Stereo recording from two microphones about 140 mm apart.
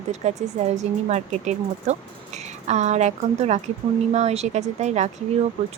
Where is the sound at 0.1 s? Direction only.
55° right (ahead or behind).